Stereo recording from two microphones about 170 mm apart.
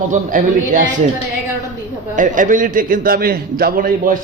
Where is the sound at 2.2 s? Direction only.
50° right (ahead or behind).